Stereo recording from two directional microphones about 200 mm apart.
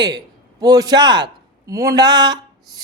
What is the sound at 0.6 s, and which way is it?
A man's voice, 20° right (ahead or behind).